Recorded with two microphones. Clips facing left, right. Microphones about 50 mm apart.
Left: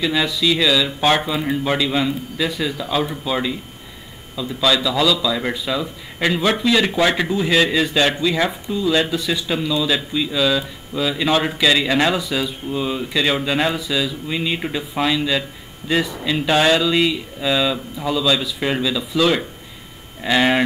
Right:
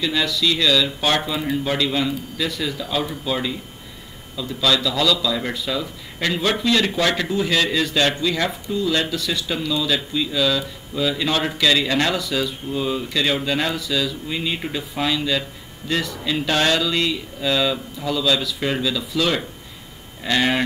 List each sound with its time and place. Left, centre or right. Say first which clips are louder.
0.0 s speech: left 2 dB; centre